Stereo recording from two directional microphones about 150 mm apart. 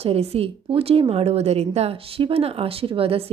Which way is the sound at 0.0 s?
45° right (ahead or behind).